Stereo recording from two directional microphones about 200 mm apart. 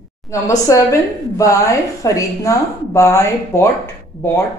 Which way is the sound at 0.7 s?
15° left (ahead or behind).